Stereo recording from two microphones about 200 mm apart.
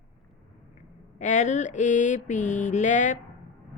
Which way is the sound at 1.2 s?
40° left (ahead or behind).